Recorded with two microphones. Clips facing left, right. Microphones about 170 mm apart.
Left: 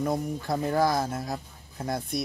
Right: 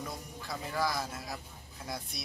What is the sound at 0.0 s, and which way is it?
Speech, 55° left (ahead or behind).